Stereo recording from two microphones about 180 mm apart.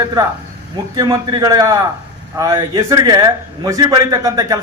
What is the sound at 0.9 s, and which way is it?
A man's voice, 20° right (ahead or behind).